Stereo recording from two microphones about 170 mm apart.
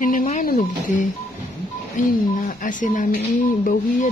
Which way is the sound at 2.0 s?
50° left (ahead or behind).